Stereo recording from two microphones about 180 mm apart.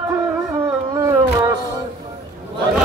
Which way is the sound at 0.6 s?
15° right (ahead or behind).